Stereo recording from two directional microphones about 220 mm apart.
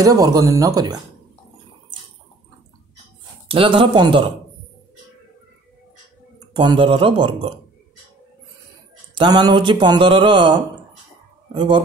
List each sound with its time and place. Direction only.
0.0 s speech: 15° right (ahead or behind)
3.4 s speech: 25° right (ahead or behind)
6.5 s speech: 20° right (ahead or behind)
9.1 s speech: 20° right (ahead or behind)